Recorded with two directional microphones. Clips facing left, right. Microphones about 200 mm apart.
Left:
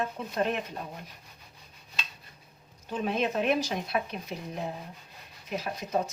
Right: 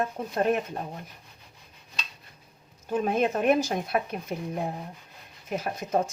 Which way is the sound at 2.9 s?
45° right (ahead or behind).